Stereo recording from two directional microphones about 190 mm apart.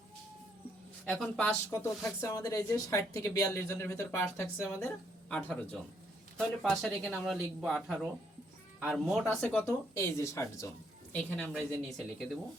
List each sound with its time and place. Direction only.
1.0 s speech: 10° left (ahead or behind)